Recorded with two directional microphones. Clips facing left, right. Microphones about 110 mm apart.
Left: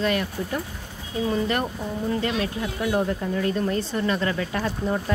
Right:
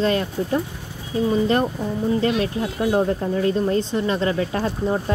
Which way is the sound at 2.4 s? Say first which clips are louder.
Right 4 dB; 35° right (ahead or behind).